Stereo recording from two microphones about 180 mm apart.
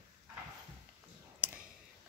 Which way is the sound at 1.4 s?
10° right (ahead or behind).